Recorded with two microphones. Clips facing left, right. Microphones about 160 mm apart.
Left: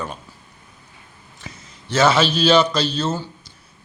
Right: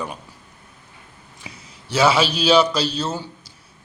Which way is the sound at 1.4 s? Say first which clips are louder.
Left 2 dB; 10° right (ahead or behind).